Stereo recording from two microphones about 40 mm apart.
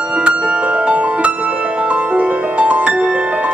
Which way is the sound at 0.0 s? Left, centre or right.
Right.